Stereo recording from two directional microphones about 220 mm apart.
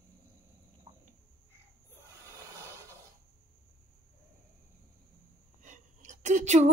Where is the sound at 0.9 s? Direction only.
20° right (ahead or behind).